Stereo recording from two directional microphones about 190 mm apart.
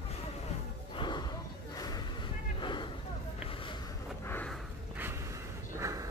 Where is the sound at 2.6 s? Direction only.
25° left (ahead or behind).